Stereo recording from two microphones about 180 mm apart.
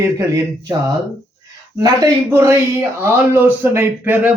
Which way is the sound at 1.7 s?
20° right (ahead or behind).